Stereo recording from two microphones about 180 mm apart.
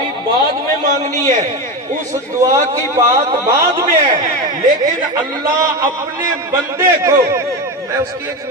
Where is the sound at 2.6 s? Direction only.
15° right (ahead or behind).